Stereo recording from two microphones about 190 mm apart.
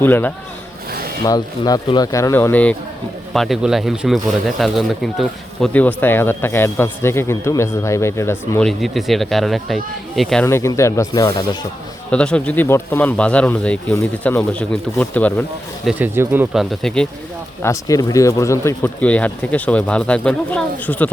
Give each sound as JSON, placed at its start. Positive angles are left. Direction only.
{"t": 0.0, "sound": "speech", "side_deg": 10}
{"t": 0.9, "sound": "rub", "side_deg": -50}
{"t": 1.2, "sound": "speech", "side_deg": 20}
{"t": 8.6, "sound": "speech", "side_deg": 0}
{"t": 10.4, "sound": "speech", "side_deg": 15}
{"t": 12.1, "sound": "speech", "side_deg": 5}
{"t": 15.9, "sound": "speech", "side_deg": -10}
{"t": 16.8, "sound": "speech", "side_deg": 5}
{"t": 17.6, "sound": "speech", "side_deg": 15}